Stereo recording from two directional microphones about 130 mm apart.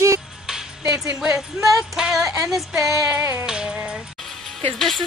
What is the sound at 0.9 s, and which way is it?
Speech, 25° right (ahead or behind).